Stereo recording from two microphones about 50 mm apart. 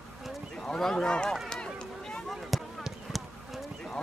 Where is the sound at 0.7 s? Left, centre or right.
Centre.